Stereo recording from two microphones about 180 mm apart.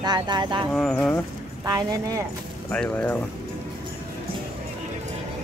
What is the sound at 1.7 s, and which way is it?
Speech, 20° right (ahead or behind).